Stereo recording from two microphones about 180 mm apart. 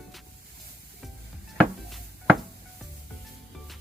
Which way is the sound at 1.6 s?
5° right (ahead or behind).